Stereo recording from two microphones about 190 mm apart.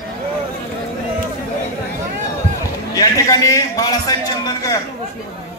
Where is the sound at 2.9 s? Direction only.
20° left (ahead or behind).